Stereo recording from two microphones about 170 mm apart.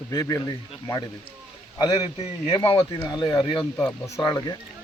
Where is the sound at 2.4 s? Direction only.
30° left (ahead or behind).